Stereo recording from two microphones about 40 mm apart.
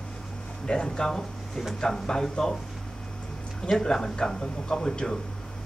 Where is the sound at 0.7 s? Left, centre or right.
Left.